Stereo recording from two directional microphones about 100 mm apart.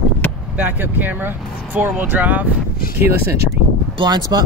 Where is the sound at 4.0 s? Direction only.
45° right (ahead or behind).